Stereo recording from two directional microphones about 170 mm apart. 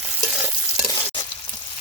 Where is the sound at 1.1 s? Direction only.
25° left (ahead or behind).